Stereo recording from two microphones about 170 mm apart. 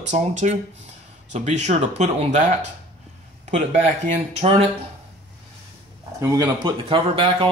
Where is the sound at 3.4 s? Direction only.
40° right (ahead or behind).